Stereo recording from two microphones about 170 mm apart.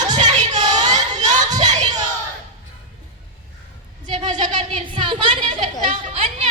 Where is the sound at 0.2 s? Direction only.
45° right (ahead or behind).